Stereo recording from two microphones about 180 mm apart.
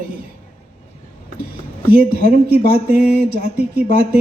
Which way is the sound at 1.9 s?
55° right (ahead or behind).